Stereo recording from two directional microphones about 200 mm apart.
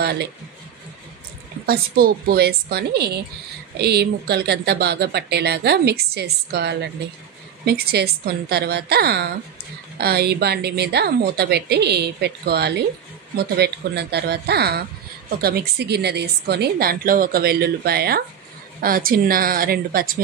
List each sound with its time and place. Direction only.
0.0 s a man's voice: 50° right (ahead or behind)
1.7 s speech: 45° right (ahead or behind)